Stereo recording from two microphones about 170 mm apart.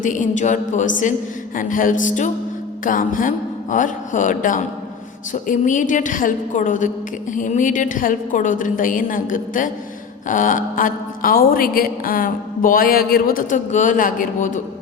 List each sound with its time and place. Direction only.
0.0 s a woman's voice: 50° left (ahead or behind)